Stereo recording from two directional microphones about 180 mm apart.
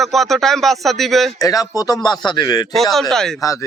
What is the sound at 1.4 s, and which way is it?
Speech, 20° left (ahead or behind).